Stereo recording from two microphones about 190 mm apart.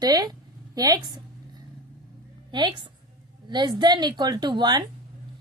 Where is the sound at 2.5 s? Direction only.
25° right (ahead or behind).